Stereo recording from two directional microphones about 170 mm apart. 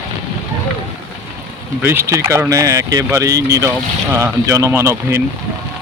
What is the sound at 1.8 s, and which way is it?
Speech, 15° right (ahead or behind).